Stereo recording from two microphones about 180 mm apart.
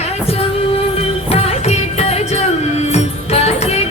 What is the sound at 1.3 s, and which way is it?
Music, 35° left (ahead or behind).